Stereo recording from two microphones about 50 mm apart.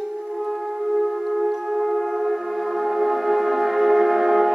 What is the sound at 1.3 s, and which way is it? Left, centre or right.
Music, centre.